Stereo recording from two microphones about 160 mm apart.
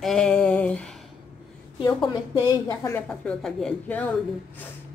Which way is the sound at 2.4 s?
20° left (ahead or behind).